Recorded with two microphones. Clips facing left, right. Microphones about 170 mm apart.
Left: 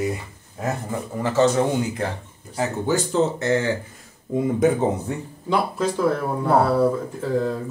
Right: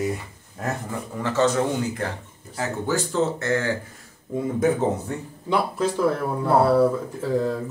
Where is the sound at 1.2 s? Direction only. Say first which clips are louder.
Left 2 dB; 10° left (ahead or behind).